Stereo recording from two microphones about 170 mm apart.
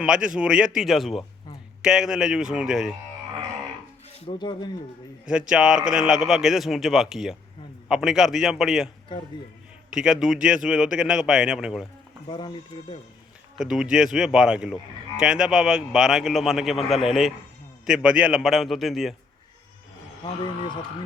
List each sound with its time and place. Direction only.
0.0 s a man's voice: 5° right (ahead or behind)
4.1 s speech: 30° left (ahead or behind)
5.2 s a man's voice: 5° right (ahead or behind)
9.9 s a man's voice: 5° right (ahead or behind)
12.3 s speech: 25° left (ahead or behind)
13.6 s a man's voice: 5° right (ahead or behind)